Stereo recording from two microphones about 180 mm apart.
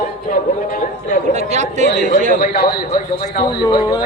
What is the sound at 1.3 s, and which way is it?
Chatter, 40° right (ahead or behind).